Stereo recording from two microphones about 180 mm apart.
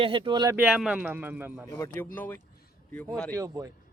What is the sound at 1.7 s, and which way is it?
Speech, 15° left (ahead or behind).